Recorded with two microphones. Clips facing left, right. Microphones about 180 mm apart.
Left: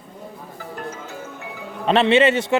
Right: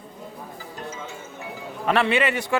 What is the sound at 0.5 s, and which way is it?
Music, 60° left (ahead or behind).